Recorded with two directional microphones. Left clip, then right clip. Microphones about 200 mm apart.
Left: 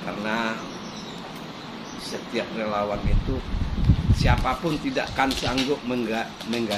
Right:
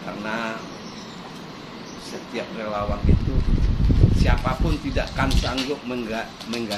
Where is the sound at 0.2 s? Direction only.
25° left (ahead or behind).